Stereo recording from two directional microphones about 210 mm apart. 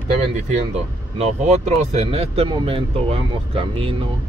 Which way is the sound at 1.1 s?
30° right (ahead or behind).